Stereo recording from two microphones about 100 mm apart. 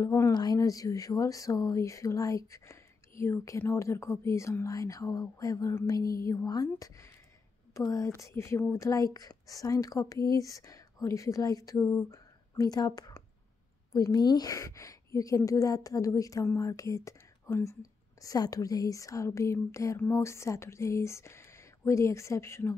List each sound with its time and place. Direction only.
0.0 s speech: 30° left (ahead or behind)
0.3 s a woman's voice: 40° left (ahead or behind); by 17.7 s 25° left (ahead or behind)
18.2 s speech: 40° left (ahead or behind)